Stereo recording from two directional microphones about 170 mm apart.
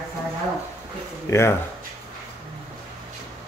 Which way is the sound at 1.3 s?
15° left (ahead or behind).